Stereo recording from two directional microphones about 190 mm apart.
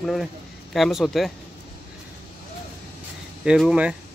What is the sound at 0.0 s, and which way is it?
A man's voice, centre (ahead or behind).